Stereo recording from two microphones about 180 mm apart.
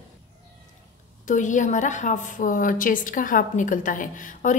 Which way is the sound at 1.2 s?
45° left (ahead or behind).